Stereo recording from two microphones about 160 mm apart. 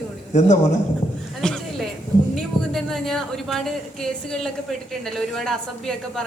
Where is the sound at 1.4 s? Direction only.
Centre (ahead or behind).